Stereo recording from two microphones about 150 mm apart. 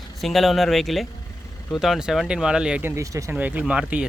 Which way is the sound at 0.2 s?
Centre (ahead or behind).